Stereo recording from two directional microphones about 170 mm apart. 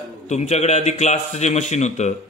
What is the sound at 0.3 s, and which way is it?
A man's voice, 40° left (ahead or behind).